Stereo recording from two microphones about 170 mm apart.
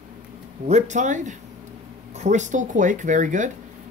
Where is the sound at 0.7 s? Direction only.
40° right (ahead or behind).